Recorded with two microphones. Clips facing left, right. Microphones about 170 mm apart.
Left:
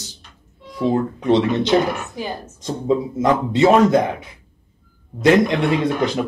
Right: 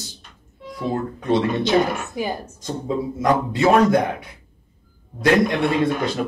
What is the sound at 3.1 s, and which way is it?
Speech, 20° left (ahead or behind).